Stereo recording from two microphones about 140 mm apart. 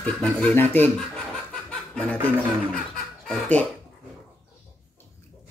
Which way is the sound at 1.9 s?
10° left (ahead or behind).